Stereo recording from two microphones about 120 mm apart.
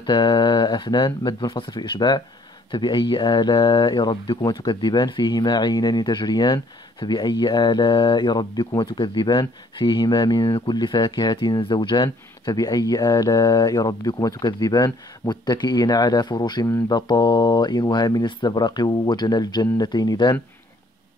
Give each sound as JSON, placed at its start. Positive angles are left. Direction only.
{"t": 0.0, "sound": "speech", "side_deg": 40}